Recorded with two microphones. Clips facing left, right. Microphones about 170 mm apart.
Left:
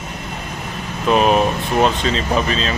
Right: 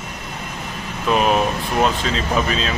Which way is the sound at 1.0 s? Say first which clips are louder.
Left 3 dB; centre (ahead or behind).